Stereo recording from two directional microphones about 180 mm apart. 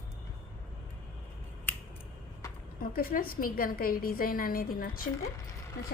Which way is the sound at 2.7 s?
55° left (ahead or behind).